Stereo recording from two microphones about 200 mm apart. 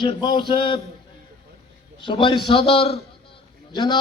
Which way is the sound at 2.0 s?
25° left (ahead or behind).